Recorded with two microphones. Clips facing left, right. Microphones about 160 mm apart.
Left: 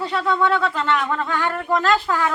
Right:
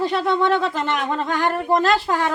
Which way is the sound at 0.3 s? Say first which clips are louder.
Right 1 dB; 20° right (ahead or behind).